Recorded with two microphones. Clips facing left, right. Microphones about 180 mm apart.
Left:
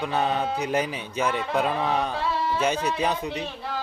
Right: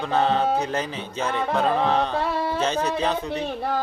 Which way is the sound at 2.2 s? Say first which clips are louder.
Right 2 dB; 55° right (ahead or behind).